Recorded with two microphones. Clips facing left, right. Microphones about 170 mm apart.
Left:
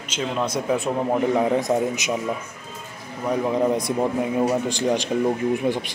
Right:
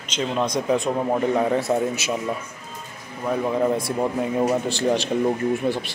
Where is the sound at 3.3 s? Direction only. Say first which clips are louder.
Left 1 dB; 15° left (ahead or behind).